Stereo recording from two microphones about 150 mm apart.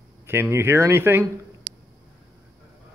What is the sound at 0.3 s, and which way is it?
Speech, 15° right (ahead or behind).